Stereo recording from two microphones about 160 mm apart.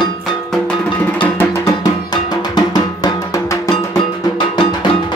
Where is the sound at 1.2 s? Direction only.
15° left (ahead or behind).